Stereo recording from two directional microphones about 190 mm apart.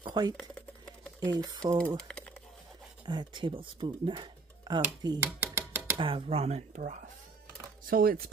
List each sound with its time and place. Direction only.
0.0 s speech: 20° right (ahead or behind)
3.1 s speech: 25° right (ahead or behind)
5.2 s a sound: 10° right (ahead or behind)
5.9 s speech: 30° right (ahead or behind); by 8.3 s 50° right (ahead or behind)